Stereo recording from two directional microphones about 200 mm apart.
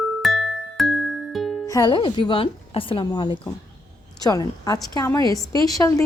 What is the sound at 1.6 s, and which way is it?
A woman's voice, 20° left (ahead or behind).